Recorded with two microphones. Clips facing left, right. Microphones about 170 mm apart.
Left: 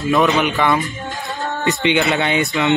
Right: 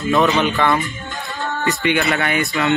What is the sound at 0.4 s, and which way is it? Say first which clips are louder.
A man's voice: even; 15° left (ahead or behind).